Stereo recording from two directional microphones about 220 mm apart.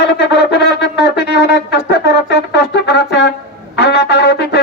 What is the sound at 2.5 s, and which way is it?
Brass instrument, 50° left (ahead or behind).